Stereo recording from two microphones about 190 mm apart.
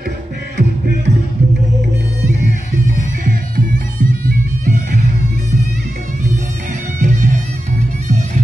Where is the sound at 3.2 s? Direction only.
50° right (ahead or behind).